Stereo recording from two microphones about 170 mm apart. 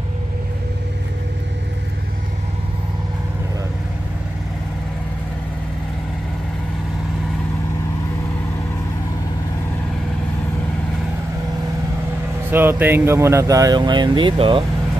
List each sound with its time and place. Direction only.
12.4 s speech: 10° right (ahead or behind); by 14.6 s 30° right (ahead or behind)